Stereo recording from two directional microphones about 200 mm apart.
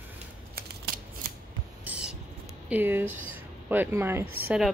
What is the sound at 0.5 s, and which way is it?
Shuffling cards, 50° right (ahead or behind).